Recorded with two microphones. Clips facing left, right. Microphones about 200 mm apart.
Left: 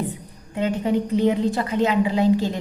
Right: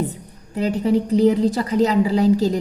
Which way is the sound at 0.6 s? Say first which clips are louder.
Right 3 dB; 35° right (ahead or behind).